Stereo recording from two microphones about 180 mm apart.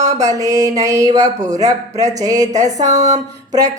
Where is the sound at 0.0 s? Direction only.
20° right (ahead or behind).